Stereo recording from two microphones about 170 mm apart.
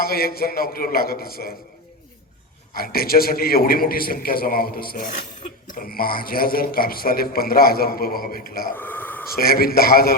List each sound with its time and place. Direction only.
0.0 s a man's voice: 60° left (ahead or behind)
2.7 s a man's voice: 60° left (ahead or behind)
8.7 s a sound: 10° left (ahead or behind)
9.3 s a man's voice: 60° left (ahead or behind)